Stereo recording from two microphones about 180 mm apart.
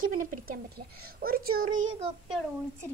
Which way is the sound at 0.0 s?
55° right (ahead or behind).